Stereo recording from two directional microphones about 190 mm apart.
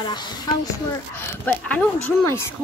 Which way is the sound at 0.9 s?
10° left (ahead or behind).